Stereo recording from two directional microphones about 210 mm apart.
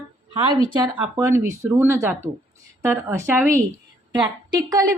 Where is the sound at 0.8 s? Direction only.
10° right (ahead or behind).